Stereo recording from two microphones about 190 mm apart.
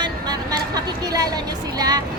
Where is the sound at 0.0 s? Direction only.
20° right (ahead or behind).